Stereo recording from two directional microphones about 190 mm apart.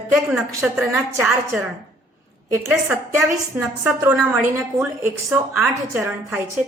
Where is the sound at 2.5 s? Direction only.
15° right (ahead or behind).